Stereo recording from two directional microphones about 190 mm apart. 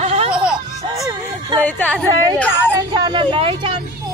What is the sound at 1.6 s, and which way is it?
Speech, 10° left (ahead or behind).